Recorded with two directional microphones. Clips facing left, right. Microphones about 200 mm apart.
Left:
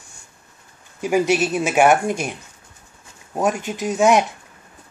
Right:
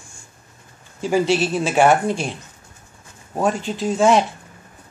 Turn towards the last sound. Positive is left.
turn(degrees=15)  # may be behind; listen again after turning